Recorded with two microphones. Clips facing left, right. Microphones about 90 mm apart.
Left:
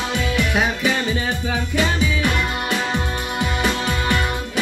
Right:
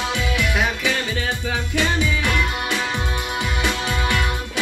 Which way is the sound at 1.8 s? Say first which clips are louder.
Left 1 dB; 45° left (ahead or behind).